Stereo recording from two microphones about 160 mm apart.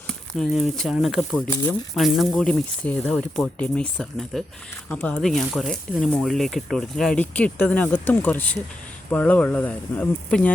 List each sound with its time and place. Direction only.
0.1 s speech: centre (ahead or behind)
1.5 s speech: 15° left (ahead or behind)
2.0 s speech: centre (ahead or behind)